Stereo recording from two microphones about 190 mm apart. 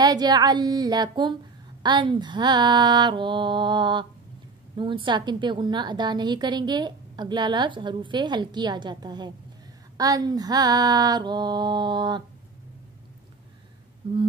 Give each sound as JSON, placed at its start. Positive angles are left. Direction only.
{"t": 0.0, "sound": "a woman's voice", "side_deg": -20}